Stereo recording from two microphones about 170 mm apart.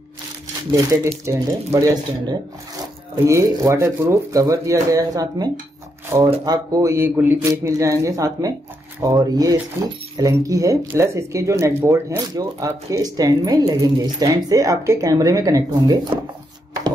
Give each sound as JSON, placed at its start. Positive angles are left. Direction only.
{"t": 0.7, "sound": "speech", "side_deg": -20}